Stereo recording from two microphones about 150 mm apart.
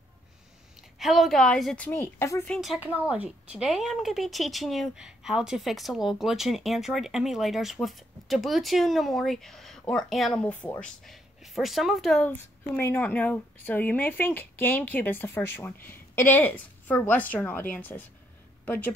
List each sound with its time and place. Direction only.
0.7 s a woman's voice: centre (ahead or behind)
1.9 s a woman's voice: 15° left (ahead or behind)
2.4 s a woman's voice: 5° left (ahead or behind)
2.8 s a woman's voice: 10° right (ahead or behind)
12.2 s a woman's voice: 10° left (ahead or behind)